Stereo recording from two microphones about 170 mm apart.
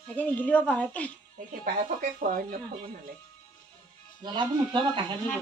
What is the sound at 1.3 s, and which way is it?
Speech, 50° right (ahead or behind).